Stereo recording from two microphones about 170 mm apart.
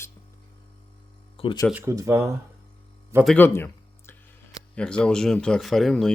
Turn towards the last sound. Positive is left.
turn(degrees=0)  # may be behind; listen again after turning